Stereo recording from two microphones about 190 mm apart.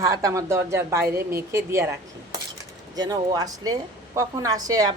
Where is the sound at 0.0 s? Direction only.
15° right (ahead or behind).